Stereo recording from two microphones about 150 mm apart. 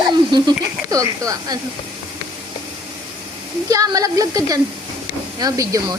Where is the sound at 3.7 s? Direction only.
25° right (ahead or behind).